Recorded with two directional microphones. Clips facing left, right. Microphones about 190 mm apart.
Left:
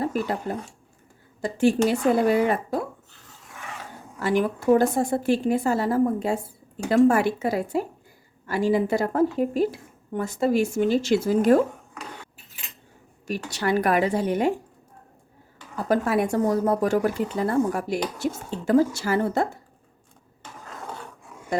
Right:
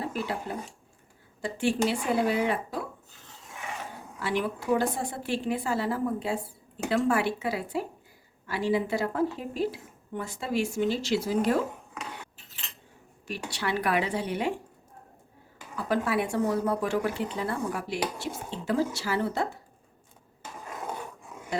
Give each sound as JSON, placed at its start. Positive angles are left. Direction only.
{"t": 0.0, "sound": "speech", "side_deg": 45}
{"t": 4.2, "sound": "speech", "side_deg": 45}
{"t": 13.2, "sound": "speech", "side_deg": 45}
{"t": 15.7, "sound": "speech", "side_deg": 45}
{"t": 20.4, "sound": "a sound", "side_deg": -15}